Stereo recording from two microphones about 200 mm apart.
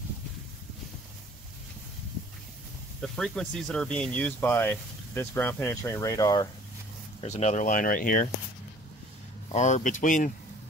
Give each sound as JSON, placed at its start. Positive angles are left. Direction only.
{"t": 3.0, "sound": "speech", "side_deg": 0}
{"t": 7.2, "sound": "speech", "side_deg": 35}
{"t": 9.5, "sound": "speech", "side_deg": 35}